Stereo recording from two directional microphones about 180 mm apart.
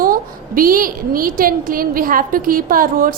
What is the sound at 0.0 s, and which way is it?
A woman's voice, 50° right (ahead or behind).